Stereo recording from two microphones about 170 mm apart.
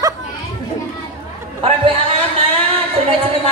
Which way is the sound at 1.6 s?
35° right (ahead or behind).